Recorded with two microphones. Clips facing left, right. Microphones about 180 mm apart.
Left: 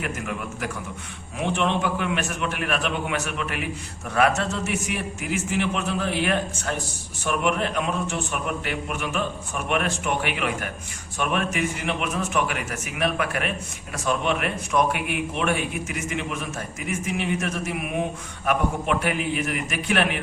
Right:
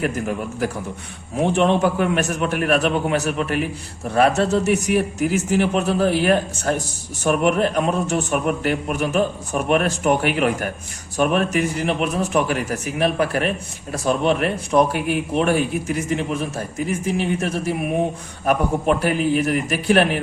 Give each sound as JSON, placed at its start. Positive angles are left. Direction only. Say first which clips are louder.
{"t": 0.0, "sound": "a man's voice", "louder": "right 7 dB", "side_deg": -35}